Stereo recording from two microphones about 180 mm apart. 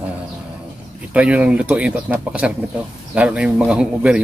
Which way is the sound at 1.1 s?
5° right (ahead or behind).